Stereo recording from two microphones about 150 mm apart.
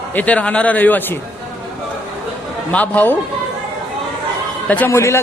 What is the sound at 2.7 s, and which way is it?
Speech, 10° left (ahead or behind).